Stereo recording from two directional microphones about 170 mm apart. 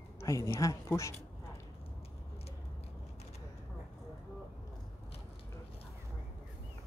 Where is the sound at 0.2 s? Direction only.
15° left (ahead or behind).